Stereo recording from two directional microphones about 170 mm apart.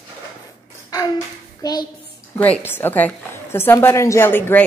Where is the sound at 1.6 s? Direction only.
25° left (ahead or behind).